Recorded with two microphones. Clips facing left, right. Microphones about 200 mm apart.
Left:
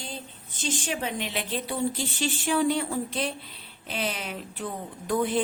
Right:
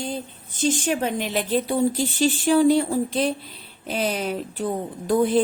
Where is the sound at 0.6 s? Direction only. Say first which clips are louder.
Right 8 dB; 45° right (ahead or behind).